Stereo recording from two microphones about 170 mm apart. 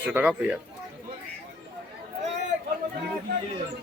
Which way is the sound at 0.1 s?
10° right (ahead or behind).